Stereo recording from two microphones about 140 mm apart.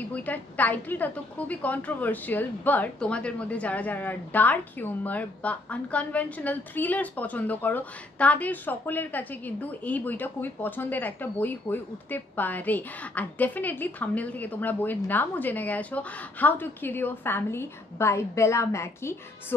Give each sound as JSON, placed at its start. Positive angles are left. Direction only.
{"t": 0.1, "sound": "a woman's voice", "side_deg": 10}